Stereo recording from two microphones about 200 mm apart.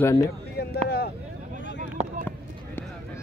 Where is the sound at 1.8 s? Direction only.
40° right (ahead or behind).